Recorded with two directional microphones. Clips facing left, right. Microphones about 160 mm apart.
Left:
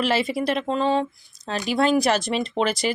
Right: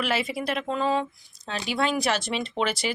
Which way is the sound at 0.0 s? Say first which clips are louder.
Left 5 dB; 35° left (ahead or behind).